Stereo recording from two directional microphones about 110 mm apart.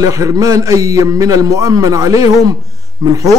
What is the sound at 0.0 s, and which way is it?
A man's voice, 30° right (ahead or behind).